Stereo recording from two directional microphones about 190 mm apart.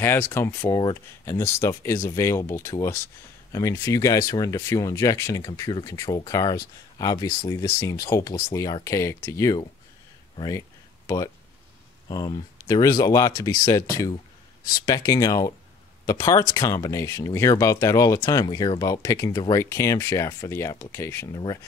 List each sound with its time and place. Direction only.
0.0 s speech: 10° left (ahead or behind)
12.1 s speech: 20° left (ahead or behind)
14.9 s speech: 20° left (ahead or behind)